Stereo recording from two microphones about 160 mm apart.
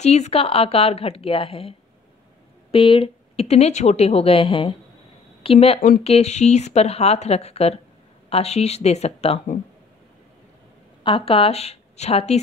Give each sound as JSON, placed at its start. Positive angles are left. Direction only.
{"t": 0.0, "sound": "a woman's voice", "side_deg": 45}
{"t": 11.1, "sound": "a woman's voice", "side_deg": 35}